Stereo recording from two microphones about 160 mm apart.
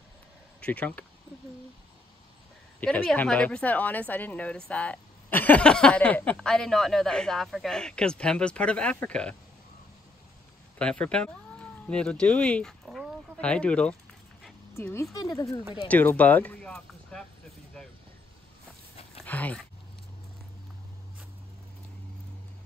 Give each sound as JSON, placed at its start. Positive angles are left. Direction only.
{"t": 0.7, "sound": "a woman's voice", "side_deg": 10}
{"t": 2.8, "sound": "a woman's voice", "side_deg": 5}
{"t": 10.8, "sound": "a woman's voice", "side_deg": 5}
{"t": 15.9, "sound": "speech", "side_deg": 10}
{"t": 19.2, "sound": "speech", "side_deg": 10}